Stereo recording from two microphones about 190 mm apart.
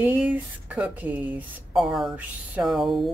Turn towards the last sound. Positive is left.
turn(degrees=0)  # may be behind; listen again after turning